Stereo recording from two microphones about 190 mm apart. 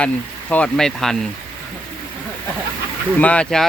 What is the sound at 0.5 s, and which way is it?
Speech, 5° left (ahead or behind).